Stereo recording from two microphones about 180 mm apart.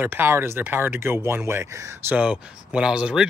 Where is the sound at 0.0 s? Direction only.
15° right (ahead or behind).